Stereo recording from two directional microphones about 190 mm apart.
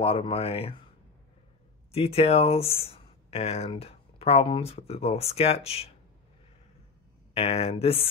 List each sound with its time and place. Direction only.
0.0 s speech: 30° left (ahead or behind)
1.9 s speech: 30° left (ahead or behind)
7.3 s speech: 30° left (ahead or behind)